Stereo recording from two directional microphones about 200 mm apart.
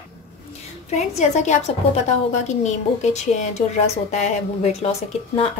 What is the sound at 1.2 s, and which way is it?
A woman's voice, 35° left (ahead or behind).